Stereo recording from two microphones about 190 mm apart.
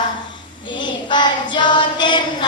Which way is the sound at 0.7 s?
25° left (ahead or behind).